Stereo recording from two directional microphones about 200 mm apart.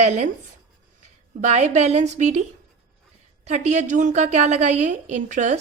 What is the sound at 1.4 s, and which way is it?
A woman's voice, 35° right (ahead or behind).